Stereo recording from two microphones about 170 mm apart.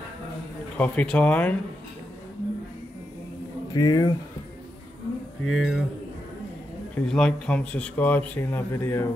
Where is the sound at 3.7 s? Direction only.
25° left (ahead or behind).